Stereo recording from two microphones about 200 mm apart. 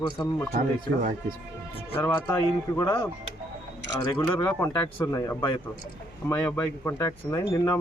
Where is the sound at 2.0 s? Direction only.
15° left (ahead or behind).